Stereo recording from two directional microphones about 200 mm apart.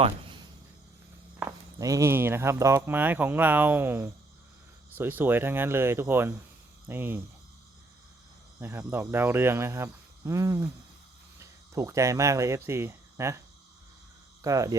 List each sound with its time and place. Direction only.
0.0 s a sound: 25° right (ahead or behind)
1.4 s speech: 15° right (ahead or behind)
8.5 s speech: 10° right (ahead or behind)
14.4 s speech: 15° right (ahead or behind)